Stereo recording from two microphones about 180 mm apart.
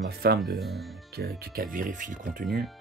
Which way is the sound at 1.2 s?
60° right (ahead or behind).